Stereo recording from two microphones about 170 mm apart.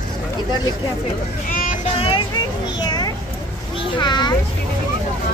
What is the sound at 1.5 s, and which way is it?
Vehicle, 55° left (ahead or behind).